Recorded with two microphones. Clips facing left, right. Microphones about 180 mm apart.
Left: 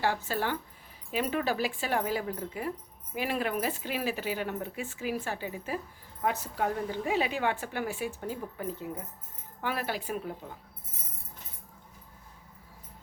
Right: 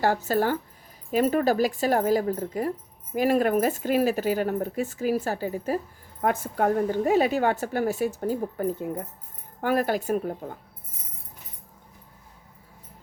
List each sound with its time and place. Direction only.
0.0 s a woman's voice: 40° right (ahead or behind)